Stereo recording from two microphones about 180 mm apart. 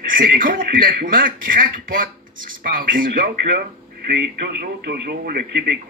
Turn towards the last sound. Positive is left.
turn(degrees=-60)  # may be behind; listen again after turning